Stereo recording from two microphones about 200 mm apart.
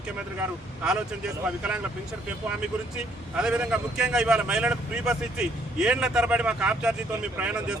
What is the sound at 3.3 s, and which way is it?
A man's voice, 5° right (ahead or behind).